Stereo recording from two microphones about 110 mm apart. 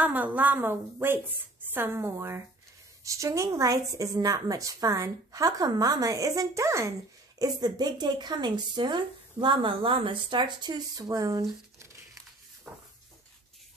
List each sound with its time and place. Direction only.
0.0 s a woman's voice: 15° right (ahead or behind); by 11.9 s 35° right (ahead or behind)